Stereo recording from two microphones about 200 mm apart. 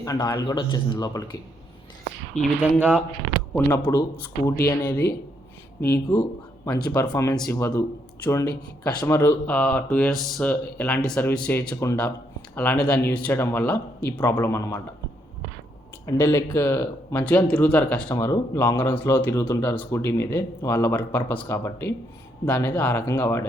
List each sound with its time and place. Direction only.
0.0 s speech: 20° left (ahead or behind)
2.4 s speech: centre (ahead or behind)
3.5 s speech: 10° left (ahead or behind)
9.5 s speech: 5° left (ahead or behind)
16.0 s speech: 10° left (ahead or behind)